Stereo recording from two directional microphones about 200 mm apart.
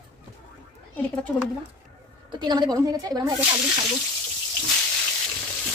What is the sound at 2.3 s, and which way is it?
Speech, 20° right (ahead or behind).